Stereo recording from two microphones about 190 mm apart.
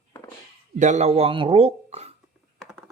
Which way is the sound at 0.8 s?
35° right (ahead or behind).